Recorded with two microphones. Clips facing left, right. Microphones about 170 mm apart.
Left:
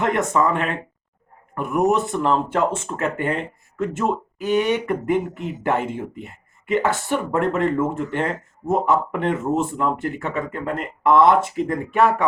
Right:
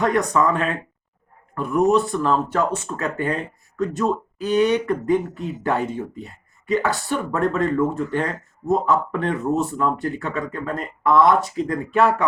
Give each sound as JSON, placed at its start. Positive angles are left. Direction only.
{"t": 0.0, "sound": "speech", "side_deg": 25}